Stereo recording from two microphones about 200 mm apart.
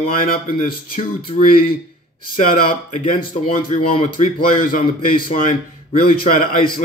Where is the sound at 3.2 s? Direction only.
25° left (ahead or behind).